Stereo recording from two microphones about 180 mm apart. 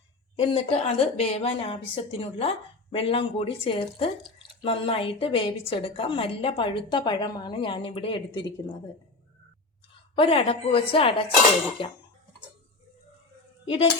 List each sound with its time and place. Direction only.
0.3 s a woman's voice: 35° left (ahead or behind)
10.2 s a woman's voice: 30° left (ahead or behind)